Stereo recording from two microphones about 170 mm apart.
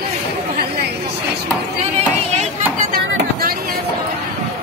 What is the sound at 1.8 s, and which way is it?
Chop, 40° right (ahead or behind).